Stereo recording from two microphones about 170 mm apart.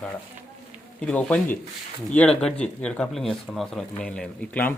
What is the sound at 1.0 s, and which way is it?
Speech, 5° left (ahead or behind).